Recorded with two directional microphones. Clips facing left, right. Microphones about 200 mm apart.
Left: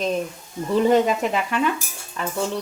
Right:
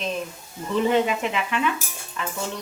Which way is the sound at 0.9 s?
40° left (ahead or behind).